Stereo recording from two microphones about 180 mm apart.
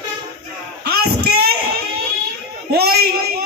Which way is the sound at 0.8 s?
60° right (ahead or behind).